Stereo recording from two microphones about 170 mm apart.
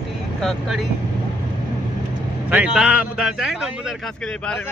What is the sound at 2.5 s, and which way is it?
A man's voice, 5° right (ahead or behind).